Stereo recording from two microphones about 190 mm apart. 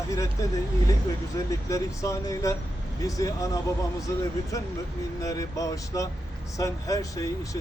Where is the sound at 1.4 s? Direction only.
15° left (ahead or behind).